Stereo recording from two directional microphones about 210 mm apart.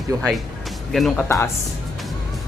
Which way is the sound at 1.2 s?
15° left (ahead or behind).